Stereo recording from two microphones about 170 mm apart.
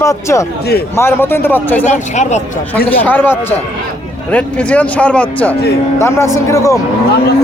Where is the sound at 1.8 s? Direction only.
45° left (ahead or behind).